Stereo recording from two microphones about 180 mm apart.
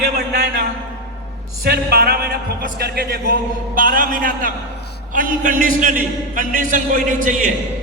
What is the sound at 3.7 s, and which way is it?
Speech, 50° right (ahead or behind).